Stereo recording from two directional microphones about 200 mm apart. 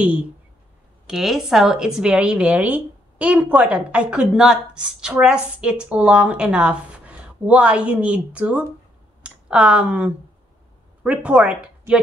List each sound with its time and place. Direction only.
1.0 s a woman's voice: centre (ahead or behind)